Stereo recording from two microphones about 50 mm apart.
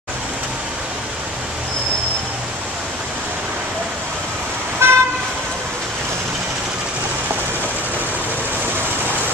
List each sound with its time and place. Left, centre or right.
4.8 s vehicle: right